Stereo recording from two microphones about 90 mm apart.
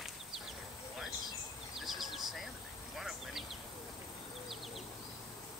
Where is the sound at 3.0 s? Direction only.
5° right (ahead or behind).